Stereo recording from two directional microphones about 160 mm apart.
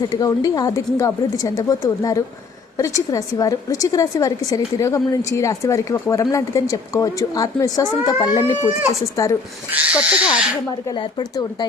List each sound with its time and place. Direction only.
0.1 s a woman's voice: 20° left (ahead or behind)
9.7 s speech: 5° right (ahead or behind)
10.8 s a woman's voice: 25° left (ahead or behind)